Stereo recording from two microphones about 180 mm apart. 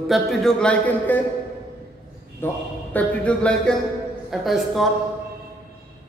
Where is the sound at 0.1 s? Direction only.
Centre (ahead or behind).